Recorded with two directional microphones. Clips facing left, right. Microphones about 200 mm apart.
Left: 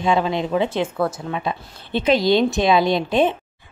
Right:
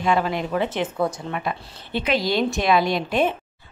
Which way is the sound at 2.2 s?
5° right (ahead or behind).